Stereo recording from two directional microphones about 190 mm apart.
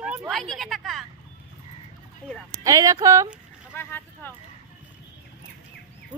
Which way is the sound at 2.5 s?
20° right (ahead or behind).